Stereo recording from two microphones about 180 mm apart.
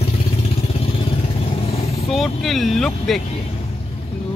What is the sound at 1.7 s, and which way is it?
Vehicle, 35° left (ahead or behind).